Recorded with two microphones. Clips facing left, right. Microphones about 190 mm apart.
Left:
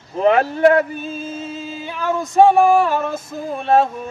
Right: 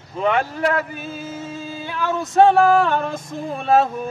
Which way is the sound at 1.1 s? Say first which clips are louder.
Left 2 dB; 25° left (ahead or behind).